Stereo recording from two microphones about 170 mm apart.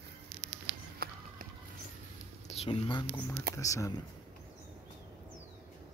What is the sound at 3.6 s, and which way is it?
Speech, 20° left (ahead or behind).